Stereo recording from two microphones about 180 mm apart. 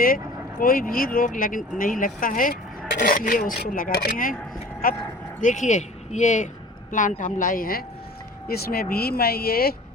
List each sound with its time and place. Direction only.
0.6 s speech: 55° left (ahead or behind)
5.4 s speech: 45° left (ahead or behind)